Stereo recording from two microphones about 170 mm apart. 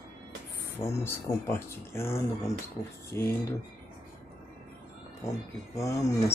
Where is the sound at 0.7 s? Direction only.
15° left (ahead or behind).